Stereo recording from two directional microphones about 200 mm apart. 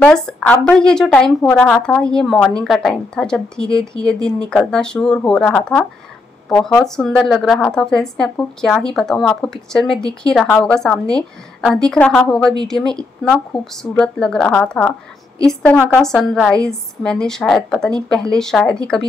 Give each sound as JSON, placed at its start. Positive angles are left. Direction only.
{"t": 0.0, "sound": "speech", "side_deg": 5}